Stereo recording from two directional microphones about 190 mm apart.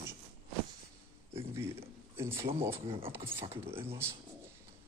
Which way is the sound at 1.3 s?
15° right (ahead or behind).